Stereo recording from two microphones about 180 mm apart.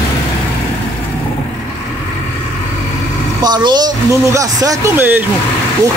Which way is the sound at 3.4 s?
25° right (ahead or behind).